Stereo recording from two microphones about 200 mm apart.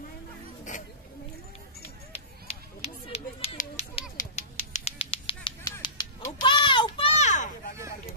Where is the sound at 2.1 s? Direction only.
30° left (ahead or behind).